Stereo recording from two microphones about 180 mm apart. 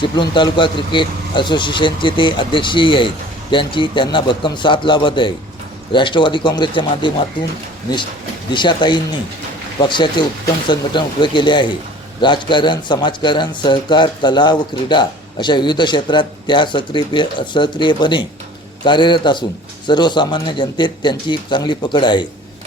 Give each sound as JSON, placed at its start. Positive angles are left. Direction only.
{"t": 0.0, "sound": "a man's voice", "side_deg": 25}
{"t": 8.5, "sound": "a man's voice", "side_deg": 25}